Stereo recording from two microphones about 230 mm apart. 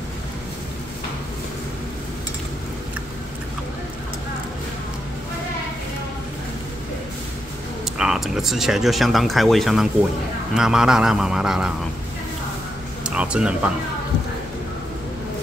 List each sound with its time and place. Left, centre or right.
7.8 s speech: centre
13.0 s speech: centre